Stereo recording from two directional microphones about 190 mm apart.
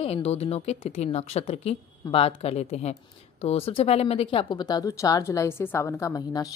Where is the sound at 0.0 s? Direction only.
30° left (ahead or behind).